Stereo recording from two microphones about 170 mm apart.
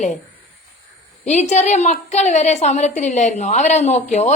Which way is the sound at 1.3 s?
40° left (ahead or behind).